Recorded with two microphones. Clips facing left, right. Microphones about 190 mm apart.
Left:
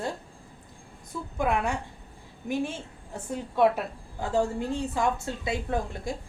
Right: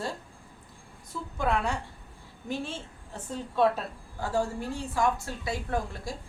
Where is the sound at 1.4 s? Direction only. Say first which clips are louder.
Left 2 dB; 15° left (ahead or behind).